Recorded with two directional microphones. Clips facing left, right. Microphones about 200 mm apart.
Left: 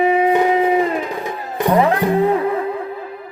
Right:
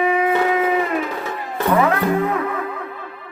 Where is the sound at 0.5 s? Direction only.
30° left (ahead or behind).